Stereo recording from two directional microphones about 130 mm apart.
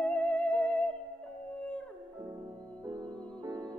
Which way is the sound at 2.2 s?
30° right (ahead or behind).